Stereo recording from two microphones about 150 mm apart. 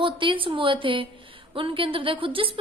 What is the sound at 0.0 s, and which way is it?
A woman's voice, 35° right (ahead or behind).